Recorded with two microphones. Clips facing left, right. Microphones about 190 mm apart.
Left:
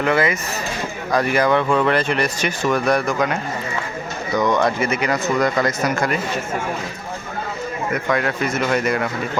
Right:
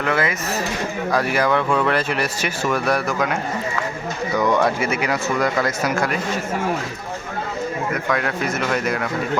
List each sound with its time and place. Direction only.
0.0 s speech: centre (ahead or behind)
4.4 s speech: 10° right (ahead or behind)
8.1 s speech: centre (ahead or behind)